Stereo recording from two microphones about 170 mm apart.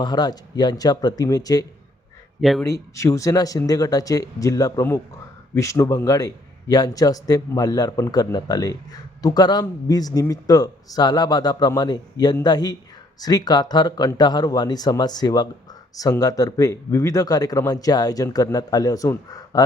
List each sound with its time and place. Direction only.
0.0 s a man's voice: 25° left (ahead or behind)
2.4 s speech: centre (ahead or behind)
2.6 s a man's voice: 20° left (ahead or behind)